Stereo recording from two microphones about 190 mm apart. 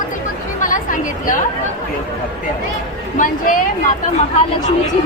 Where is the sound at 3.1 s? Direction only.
45° left (ahead or behind).